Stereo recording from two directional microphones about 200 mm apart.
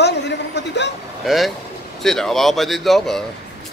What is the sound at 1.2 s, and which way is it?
Speech, centre (ahead or behind).